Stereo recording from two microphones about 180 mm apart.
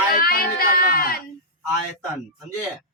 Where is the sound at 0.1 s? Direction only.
55° left (ahead or behind).